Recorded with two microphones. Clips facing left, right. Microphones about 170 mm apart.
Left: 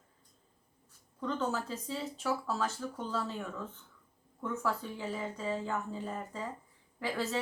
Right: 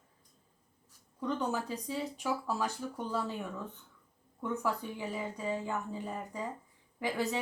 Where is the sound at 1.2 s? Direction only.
15° right (ahead or behind).